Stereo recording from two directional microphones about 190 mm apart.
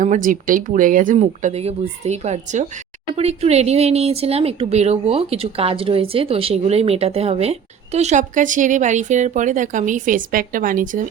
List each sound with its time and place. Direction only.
0.0 s speech: 45° right (ahead or behind)